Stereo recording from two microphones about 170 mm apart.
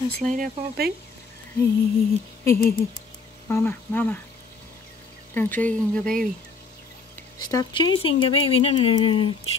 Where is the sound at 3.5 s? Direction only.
10° left (ahead or behind).